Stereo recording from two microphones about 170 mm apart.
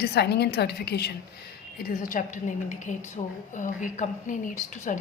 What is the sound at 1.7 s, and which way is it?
A woman's voice, 55° left (ahead or behind).